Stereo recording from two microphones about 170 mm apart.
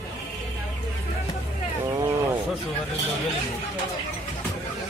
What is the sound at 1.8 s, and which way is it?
Wild animals, 20° right (ahead or behind).